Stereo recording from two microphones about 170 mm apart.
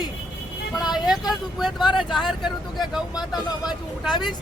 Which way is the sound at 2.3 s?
Centre (ahead or behind).